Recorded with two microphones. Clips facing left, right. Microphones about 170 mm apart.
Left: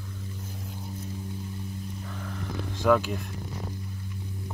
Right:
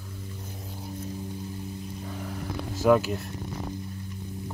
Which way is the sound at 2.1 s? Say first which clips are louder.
Right 3 dB; 15° right (ahead or behind).